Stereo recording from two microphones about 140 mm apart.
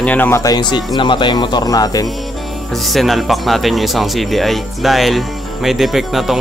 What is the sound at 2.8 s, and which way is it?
Speech, centre (ahead or behind).